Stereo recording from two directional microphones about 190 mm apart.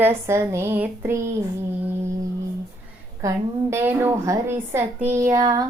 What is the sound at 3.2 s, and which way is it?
Child singing, 15° right (ahead or behind).